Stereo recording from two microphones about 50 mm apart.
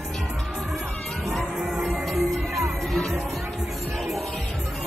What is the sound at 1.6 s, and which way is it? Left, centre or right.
Music, centre.